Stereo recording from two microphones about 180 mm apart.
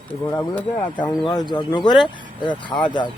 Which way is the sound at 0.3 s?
10° left (ahead or behind).